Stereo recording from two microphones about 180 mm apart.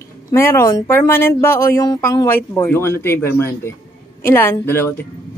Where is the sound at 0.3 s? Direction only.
15° left (ahead or behind).